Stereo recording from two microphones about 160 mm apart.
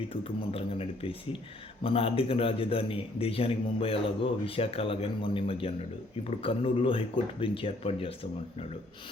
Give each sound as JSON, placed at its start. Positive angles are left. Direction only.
{"t": 0.1, "sound": "a man's voice", "side_deg": 35}